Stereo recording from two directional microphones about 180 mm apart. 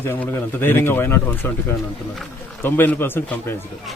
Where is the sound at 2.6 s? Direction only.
10° left (ahead or behind).